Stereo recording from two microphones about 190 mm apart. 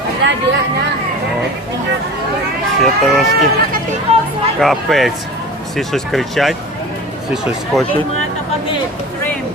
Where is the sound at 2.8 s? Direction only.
Centre (ahead or behind).